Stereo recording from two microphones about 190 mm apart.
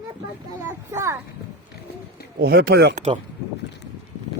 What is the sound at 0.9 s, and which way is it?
Speech, 15° right (ahead or behind).